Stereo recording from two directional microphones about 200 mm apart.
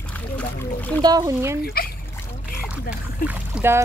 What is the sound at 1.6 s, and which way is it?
Speech, 50° left (ahead or behind).